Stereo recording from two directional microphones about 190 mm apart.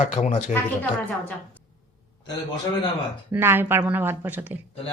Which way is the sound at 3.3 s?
10° right (ahead or behind).